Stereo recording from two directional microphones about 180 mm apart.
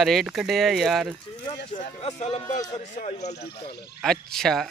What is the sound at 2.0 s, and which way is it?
Speech, 35° left (ahead or behind).